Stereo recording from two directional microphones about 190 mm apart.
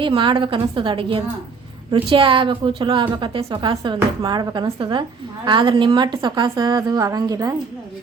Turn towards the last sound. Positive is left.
turn(degrees=-20)  # may be behind; listen again after turning